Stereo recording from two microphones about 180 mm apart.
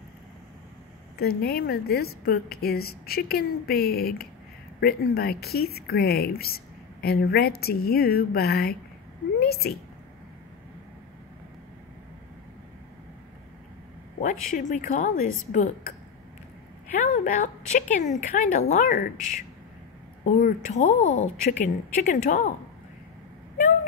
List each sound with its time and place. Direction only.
1.1 s speech: 60° left (ahead or behind)
14.5 s a woman's voice: 45° left (ahead or behind)
17.0 s a woman's voice: 45° left (ahead or behind)